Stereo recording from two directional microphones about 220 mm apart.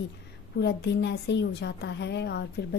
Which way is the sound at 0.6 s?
50° left (ahead or behind).